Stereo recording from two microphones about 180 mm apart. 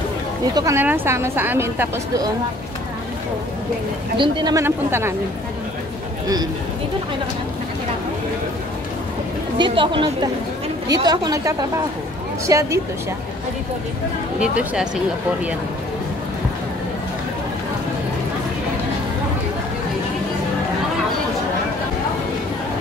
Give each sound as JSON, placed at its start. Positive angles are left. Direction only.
{"t": 0.6, "sound": "a woman's voice", "side_deg": -15}
{"t": 4.2, "sound": "a woman's voice", "side_deg": -25}
{"t": 9.6, "sound": "a woman's voice", "side_deg": -25}